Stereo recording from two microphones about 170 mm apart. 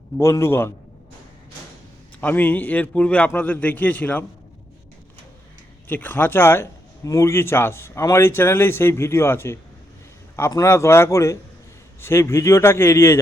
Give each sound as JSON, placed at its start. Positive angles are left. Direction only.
{"t": 0.2, "sound": "speech", "side_deg": 15}
{"t": 2.2, "sound": "speech", "side_deg": 10}
{"t": 5.9, "sound": "speech", "side_deg": 10}